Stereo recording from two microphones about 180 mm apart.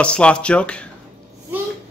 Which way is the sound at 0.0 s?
5° left (ahead or behind).